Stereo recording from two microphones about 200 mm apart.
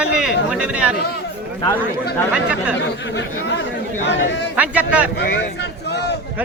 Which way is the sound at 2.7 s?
60° left (ahead or behind).